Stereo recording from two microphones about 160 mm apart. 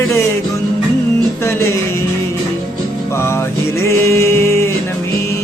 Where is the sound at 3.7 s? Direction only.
20° left (ahead or behind).